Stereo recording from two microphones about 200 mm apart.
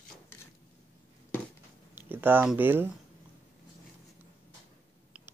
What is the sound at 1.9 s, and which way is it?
Speech, 10° right (ahead or behind).